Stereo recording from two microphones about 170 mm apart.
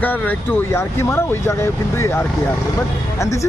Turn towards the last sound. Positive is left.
turn(degrees=15)  # may be behind; listen again after turning